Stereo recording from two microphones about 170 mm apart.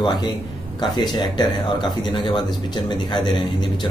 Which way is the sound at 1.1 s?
25° left (ahead or behind).